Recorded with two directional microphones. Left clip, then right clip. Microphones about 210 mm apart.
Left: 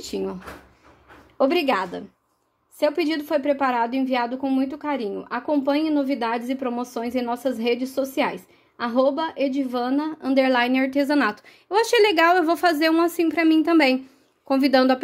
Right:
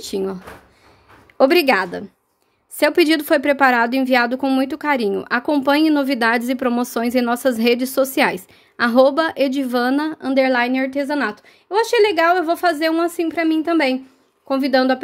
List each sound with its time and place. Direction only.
0.0 s speech: 15° right (ahead or behind)
1.4 s a woman's voice: 30° right (ahead or behind)
2.8 s a woman's voice: 35° right (ahead or behind); by 15.0 s 5° right (ahead or behind)